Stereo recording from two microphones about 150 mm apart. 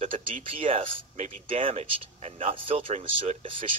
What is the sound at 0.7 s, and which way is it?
Speech, 40° right (ahead or behind).